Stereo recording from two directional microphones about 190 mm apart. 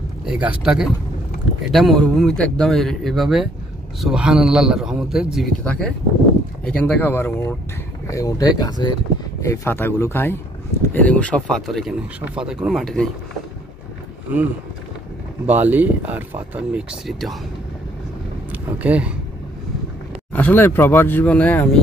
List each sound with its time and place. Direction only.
0.3 s a man's voice: 5° right (ahead or behind)
14.3 s speech: 10° right (ahead or behind)
18.5 s speech: 10° right (ahead or behind)
20.3 s speech: 10° left (ahead or behind)